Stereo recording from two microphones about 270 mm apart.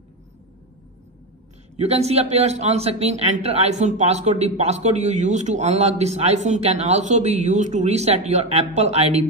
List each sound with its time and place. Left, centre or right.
1.8 s a man's voice: right